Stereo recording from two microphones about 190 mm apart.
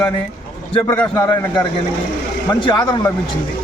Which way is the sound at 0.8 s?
10° left (ahead or behind).